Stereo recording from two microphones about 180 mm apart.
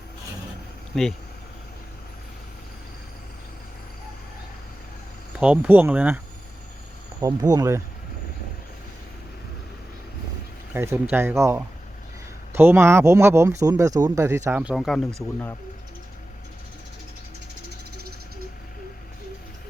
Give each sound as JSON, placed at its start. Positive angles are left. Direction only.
{"t": 0.9, "sound": "speech", "side_deg": 0}
{"t": 5.4, "sound": "speech", "side_deg": -10}
{"t": 7.2, "sound": "speech", "side_deg": -20}
{"t": 10.8, "sound": "speech", "side_deg": -10}